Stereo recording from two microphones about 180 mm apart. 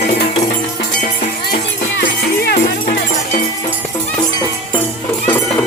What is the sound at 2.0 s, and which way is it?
Music, 60° left (ahead or behind).